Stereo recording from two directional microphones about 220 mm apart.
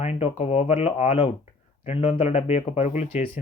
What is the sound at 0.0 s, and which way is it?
Speech, 30° left (ahead or behind).